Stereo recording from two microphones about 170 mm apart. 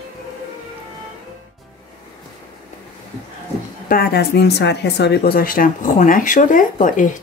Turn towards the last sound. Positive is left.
turn(degrees=50)  # may be behind; listen again after turning